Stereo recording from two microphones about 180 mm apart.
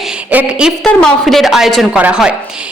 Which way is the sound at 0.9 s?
5° left (ahead or behind).